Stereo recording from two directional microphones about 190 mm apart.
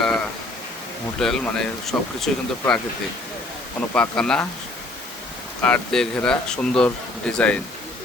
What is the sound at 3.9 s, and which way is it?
Speech, 5° left (ahead or behind).